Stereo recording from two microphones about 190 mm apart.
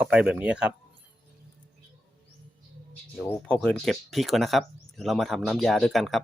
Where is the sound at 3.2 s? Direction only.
10° left (ahead or behind).